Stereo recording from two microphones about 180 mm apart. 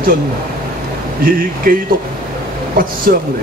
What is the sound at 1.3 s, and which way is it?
Speech, 50° right (ahead or behind).